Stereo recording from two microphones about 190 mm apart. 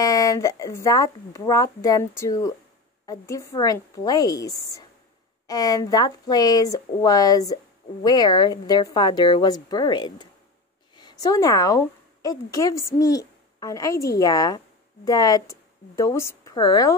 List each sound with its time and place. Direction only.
0.0 s a woman's voice: 15° left (ahead or behind)